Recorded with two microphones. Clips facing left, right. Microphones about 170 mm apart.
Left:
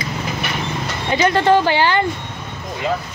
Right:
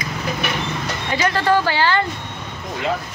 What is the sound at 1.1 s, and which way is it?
Speech, 25° left (ahead or behind).